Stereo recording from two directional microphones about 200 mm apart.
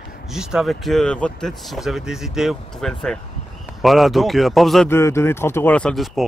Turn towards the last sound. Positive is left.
turn(degrees=0)  # may be behind; listen again after turning